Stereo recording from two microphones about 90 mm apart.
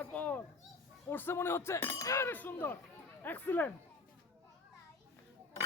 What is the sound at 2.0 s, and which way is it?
Speech, 35° left (ahead or behind).